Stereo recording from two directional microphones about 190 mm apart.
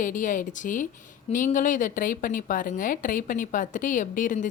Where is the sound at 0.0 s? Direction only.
45° left (ahead or behind).